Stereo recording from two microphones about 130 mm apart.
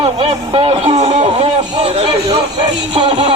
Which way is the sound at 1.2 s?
50° right (ahead or behind).